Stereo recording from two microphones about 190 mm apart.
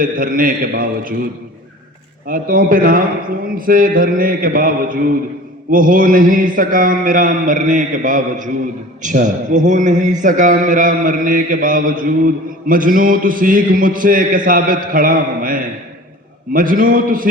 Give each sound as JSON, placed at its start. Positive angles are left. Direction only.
{"t": 0.0, "sound": "speech", "side_deg": -45}
{"t": 2.2, "sound": "speech", "side_deg": -50}